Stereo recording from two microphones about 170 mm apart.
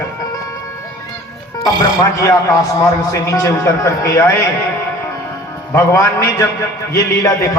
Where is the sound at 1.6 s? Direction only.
20° left (ahead or behind).